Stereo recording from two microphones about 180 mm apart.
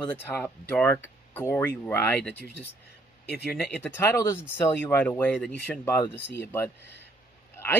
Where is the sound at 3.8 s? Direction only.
10° left (ahead or behind).